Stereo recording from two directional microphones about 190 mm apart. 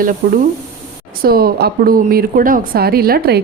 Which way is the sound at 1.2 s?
50° right (ahead or behind).